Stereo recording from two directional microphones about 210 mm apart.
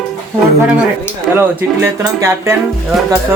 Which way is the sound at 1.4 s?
10° right (ahead or behind).